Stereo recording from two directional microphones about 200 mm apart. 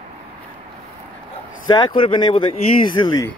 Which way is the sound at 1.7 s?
20° left (ahead or behind).